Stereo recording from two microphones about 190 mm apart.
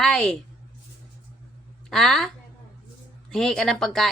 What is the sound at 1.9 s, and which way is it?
A woman's voice, centre (ahead or behind).